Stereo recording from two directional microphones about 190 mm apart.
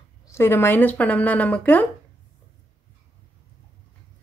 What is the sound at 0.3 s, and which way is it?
Speech, 15° left (ahead or behind).